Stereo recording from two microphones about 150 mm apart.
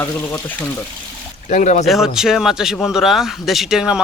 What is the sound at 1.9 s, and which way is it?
Speech, centre (ahead or behind).